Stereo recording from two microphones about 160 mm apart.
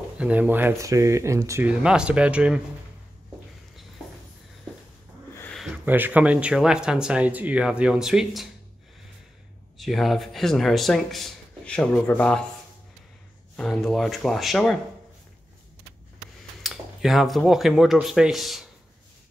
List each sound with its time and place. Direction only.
0.2 s speech: 10° right (ahead or behind)
1.7 s speech: 5° right (ahead or behind)
5.6 s speech: 10° right (ahead or behind)
9.8 s speech: centre (ahead or behind)
13.6 s speech: centre (ahead or behind)
16.6 s speech: centre (ahead or behind)